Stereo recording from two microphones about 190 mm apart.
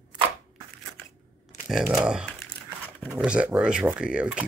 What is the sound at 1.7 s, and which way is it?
Speech, 5° right (ahead or behind).